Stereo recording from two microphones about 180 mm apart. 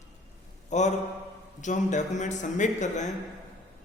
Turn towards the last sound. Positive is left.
turn(degrees=40)  # may be behind; listen again after turning